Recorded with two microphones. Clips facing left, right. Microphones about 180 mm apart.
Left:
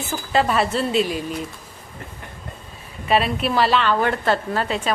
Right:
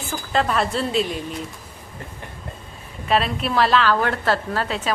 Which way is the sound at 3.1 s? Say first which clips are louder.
Left 1 dB; 5° left (ahead or behind).